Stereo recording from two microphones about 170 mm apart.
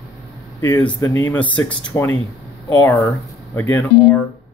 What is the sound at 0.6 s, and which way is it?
Speech, 10° left (ahead or behind).